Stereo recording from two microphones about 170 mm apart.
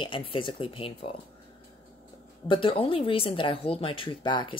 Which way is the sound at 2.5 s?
30° left (ahead or behind).